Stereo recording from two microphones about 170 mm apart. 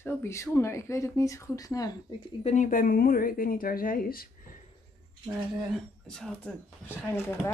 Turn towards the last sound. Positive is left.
turn(degrees=15)  # may be behind; listen again after turning